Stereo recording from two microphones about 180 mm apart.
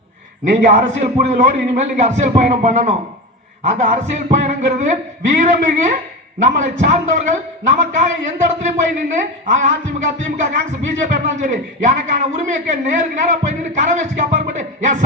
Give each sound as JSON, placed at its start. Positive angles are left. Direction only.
{"t": 0.4, "sound": "a man's voice", "side_deg": -40}
{"t": 11.1, "sound": "a man's voice", "side_deg": -45}